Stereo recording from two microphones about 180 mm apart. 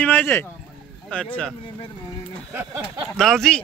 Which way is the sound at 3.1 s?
Centre (ahead or behind).